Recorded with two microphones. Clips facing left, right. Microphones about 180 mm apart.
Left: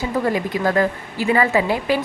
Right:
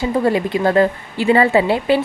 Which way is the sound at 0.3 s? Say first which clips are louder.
Right 4 dB; 25° right (ahead or behind).